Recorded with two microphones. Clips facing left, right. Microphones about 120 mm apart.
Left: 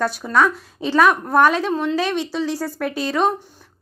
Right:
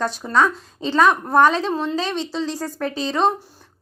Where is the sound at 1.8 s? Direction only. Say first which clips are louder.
Left 2 dB; 20° right (ahead or behind).